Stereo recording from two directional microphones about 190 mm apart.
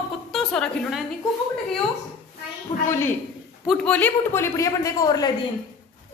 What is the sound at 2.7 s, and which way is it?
Speech, 35° left (ahead or behind).